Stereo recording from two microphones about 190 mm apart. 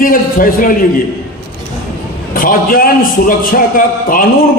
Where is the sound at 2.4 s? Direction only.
50° left (ahead or behind).